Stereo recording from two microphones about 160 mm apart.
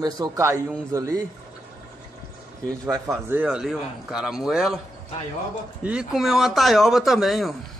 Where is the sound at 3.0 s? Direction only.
15° right (ahead or behind).